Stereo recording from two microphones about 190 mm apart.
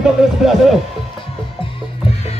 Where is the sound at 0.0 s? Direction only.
Centre (ahead or behind).